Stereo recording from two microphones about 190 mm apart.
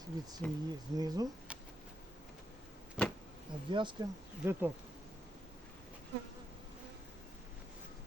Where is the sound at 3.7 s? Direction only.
25° right (ahead or behind).